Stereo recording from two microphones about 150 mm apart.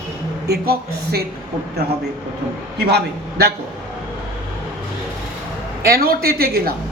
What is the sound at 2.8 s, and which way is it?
Speech, 90° right.